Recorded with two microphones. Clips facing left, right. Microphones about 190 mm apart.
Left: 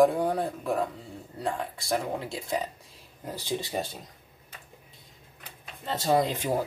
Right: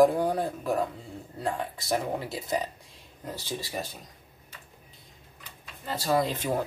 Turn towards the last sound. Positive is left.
turn(degrees=15)  # may be behind; listen again after turning